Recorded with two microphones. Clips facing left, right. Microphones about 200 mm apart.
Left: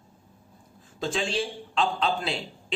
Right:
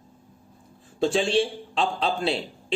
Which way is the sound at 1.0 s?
30° right (ahead or behind).